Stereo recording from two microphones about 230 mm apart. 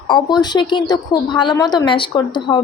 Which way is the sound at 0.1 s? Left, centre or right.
Centre.